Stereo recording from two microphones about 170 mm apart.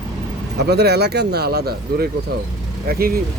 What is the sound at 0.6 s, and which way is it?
Speech, 75° right (ahead or behind).